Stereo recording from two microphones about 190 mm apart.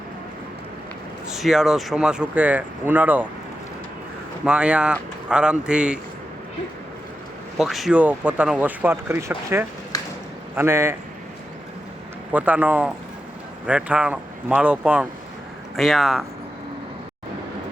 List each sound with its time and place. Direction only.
1.3 s speech: centre (ahead or behind)
4.4 s speech: 5° right (ahead or behind)
7.6 s speech: centre (ahead or behind)
9.9 s a sound: 20° left (ahead or behind)
10.5 s speech: 10° right (ahead or behind)
12.3 s speech: 5° right (ahead or behind)